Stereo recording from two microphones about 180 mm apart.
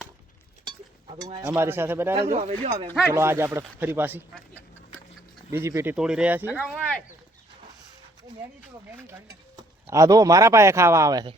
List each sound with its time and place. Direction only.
0.6 s a sound: 35° right (ahead or behind)
1.2 s speech: 20° right (ahead or behind)
2.3 s speech: 40° right (ahead or behind)
3.1 s speech: 15° right (ahead or behind)
5.5 s speech: 15° right (ahead or behind)
9.0 s speech: 10° right (ahead or behind)